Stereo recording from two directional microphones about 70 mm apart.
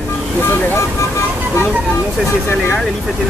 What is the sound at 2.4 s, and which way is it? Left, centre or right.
Speech, left.